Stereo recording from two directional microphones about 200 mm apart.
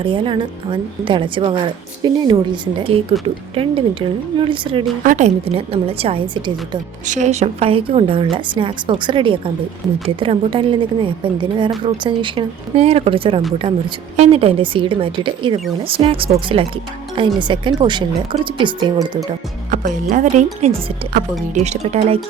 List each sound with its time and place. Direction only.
0.0 s a woman's voice: 25° right (ahead or behind)
5.0 s a woman's voice: 35° right (ahead or behind)
19.7 s speech: 40° right (ahead or behind)